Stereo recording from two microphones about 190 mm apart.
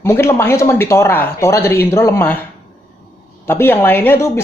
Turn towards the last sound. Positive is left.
turn(degrees=15)  # may be behind; listen again after turning